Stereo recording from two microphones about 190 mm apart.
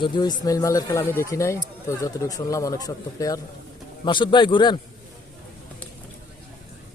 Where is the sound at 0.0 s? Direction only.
20° left (ahead or behind).